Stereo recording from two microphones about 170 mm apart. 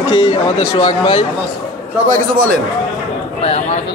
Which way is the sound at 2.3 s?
60° right (ahead or behind).